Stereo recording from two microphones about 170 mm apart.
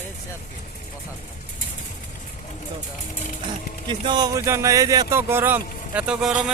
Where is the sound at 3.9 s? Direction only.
25° right (ahead or behind); by 6.5 s 5° right (ahead or behind).